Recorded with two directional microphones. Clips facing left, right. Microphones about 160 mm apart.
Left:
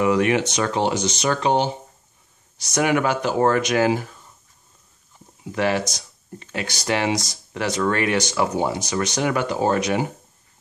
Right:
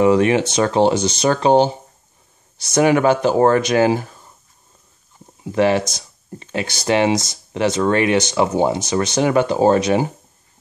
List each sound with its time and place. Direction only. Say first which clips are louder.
0.0 s speech: right 5 dB; 30° right (ahead or behind)
5.4 s speech: right 6 dB; 25° right (ahead or behind)